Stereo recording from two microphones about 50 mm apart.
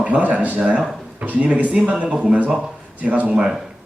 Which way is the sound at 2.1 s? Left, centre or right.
Centre.